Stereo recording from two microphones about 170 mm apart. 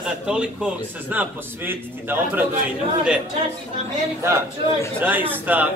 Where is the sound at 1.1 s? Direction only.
10° right (ahead or behind).